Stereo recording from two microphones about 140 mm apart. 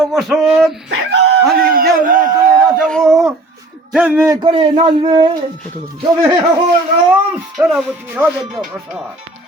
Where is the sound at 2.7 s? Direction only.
5° left (ahead or behind).